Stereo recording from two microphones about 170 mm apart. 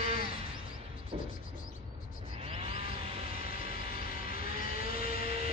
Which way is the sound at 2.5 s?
35° right (ahead or behind).